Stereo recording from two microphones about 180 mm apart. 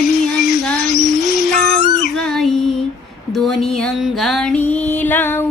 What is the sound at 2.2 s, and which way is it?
Female singing, centre (ahead or behind).